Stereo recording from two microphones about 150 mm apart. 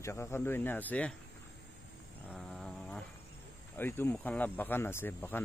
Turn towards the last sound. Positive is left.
turn(degrees=15)  # may be behind; listen again after turning